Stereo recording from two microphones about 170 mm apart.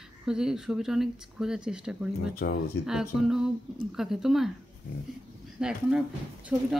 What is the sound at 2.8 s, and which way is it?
Speech, 5° right (ahead or behind).